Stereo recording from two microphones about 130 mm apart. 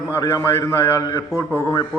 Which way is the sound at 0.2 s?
25° left (ahead or behind).